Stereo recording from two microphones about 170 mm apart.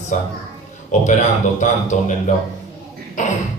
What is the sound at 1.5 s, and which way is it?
Speech, 45° left (ahead or behind).